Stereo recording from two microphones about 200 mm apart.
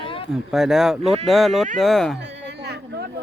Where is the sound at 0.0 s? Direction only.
25° left (ahead or behind).